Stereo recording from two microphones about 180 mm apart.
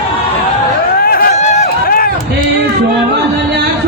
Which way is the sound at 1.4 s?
45° left (ahead or behind).